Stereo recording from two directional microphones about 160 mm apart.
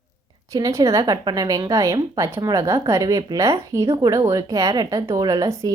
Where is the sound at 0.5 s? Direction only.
20° right (ahead or behind).